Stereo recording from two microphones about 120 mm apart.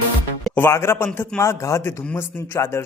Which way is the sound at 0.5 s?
20° left (ahead or behind).